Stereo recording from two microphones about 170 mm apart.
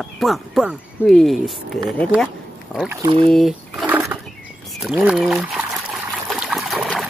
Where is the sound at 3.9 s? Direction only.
10° right (ahead or behind).